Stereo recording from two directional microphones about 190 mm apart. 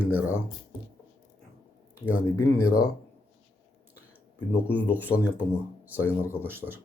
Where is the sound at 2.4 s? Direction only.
15° left (ahead or behind).